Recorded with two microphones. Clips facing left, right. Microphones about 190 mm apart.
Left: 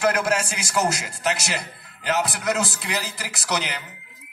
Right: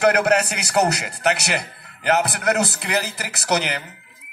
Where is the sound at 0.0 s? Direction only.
65° right (ahead or behind).